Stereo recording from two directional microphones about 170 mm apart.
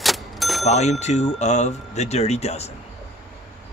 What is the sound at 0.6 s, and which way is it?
Speech, 40° left (ahead or behind).